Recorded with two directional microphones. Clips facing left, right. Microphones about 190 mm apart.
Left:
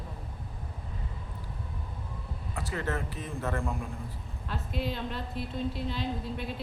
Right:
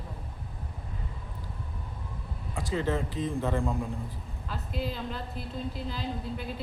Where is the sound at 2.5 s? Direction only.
15° right (ahead or behind).